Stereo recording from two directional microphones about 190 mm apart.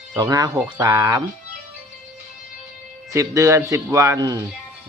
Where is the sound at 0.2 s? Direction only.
20° right (ahead or behind).